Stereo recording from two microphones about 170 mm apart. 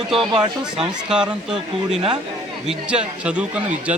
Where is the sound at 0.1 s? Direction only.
Centre (ahead or behind).